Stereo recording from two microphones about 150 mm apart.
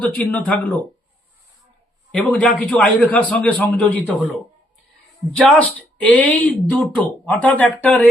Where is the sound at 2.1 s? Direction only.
5° left (ahead or behind).